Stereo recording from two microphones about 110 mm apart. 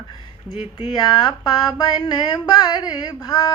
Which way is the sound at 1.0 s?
40° left (ahead or behind).